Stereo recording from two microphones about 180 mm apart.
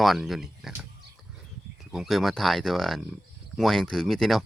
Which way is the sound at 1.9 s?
Centre (ahead or behind).